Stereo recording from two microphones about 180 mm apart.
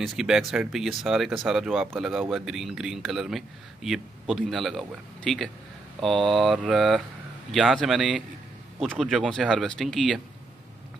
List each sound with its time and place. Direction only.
0.0 s speech: centre (ahead or behind)